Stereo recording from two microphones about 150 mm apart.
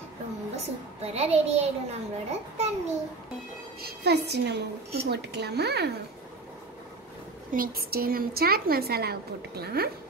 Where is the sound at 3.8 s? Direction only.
90° right.